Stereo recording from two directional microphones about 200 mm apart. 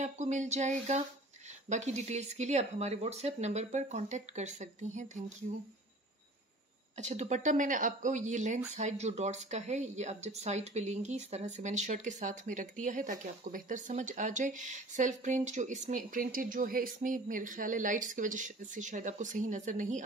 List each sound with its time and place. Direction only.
0.0 s speech: 35° right (ahead or behind)
7.0 s speech: 35° right (ahead or behind)